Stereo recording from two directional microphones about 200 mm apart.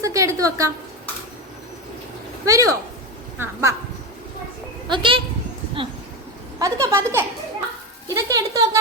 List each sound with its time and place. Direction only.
0.0 s a woman's voice: 15° right (ahead or behind)
2.4 s a woman's voice: 15° right (ahead or behind)
4.9 s speech: 25° right (ahead or behind)
6.6 s a woman's voice: 15° right (ahead or behind)